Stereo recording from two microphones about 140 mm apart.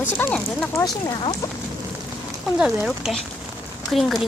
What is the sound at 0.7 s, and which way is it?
Speech, 25° left (ahead or behind).